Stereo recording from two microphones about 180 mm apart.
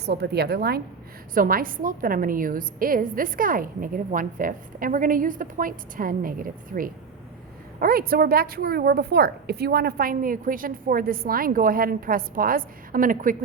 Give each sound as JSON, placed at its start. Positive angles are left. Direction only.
{"t": 0.0, "sound": "a woman's voice", "side_deg": -65}